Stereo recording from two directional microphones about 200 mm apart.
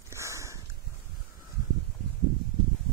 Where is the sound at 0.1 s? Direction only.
15° right (ahead or behind).